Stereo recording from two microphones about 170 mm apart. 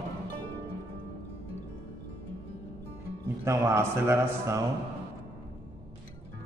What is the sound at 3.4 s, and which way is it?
A man's voice, 15° right (ahead or behind).